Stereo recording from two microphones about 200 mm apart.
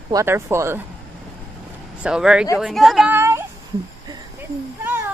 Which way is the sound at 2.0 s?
5° right (ahead or behind).